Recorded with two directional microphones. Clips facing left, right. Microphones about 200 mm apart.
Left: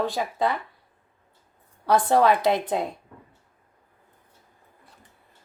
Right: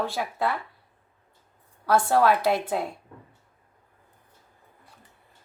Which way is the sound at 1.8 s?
20° left (ahead or behind).